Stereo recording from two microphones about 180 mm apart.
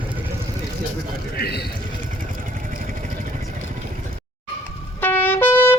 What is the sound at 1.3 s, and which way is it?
Speech, 60° left (ahead or behind).